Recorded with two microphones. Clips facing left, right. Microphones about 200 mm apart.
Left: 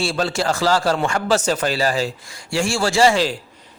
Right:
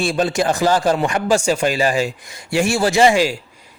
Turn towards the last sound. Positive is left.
turn(degrees=-10)  # may be behind; listen again after turning